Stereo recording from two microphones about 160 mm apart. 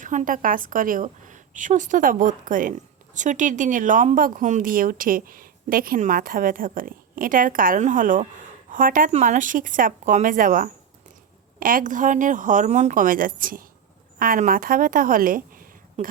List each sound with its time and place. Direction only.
0.0 s speech: 55° right (ahead or behind)